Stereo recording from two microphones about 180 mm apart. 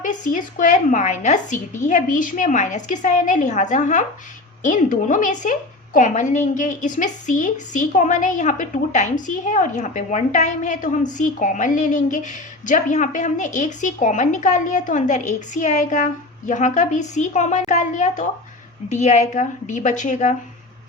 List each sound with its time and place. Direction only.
0.0 s a woman's voice: 45° left (ahead or behind)